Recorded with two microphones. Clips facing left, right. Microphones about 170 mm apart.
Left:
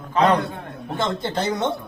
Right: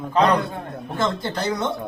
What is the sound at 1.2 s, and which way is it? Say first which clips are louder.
Speech: left 1 dB; 25° left (ahead or behind).